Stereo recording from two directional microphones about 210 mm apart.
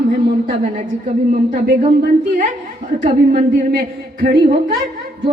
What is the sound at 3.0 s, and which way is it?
A woman's voice, 40° right (ahead or behind).